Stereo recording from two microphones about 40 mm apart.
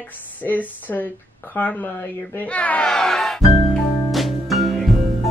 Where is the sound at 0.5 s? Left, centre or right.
Left.